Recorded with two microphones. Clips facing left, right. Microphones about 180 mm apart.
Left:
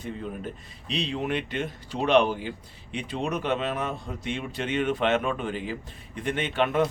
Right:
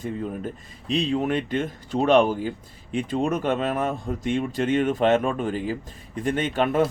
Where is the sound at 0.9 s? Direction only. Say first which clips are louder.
Right 6 dB; 45° right (ahead or behind).